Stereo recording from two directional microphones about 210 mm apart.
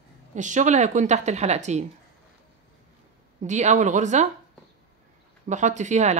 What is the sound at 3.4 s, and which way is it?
Speech, 35° right (ahead or behind).